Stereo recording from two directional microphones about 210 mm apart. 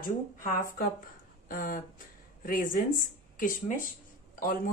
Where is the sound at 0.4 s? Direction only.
40° left (ahead or behind).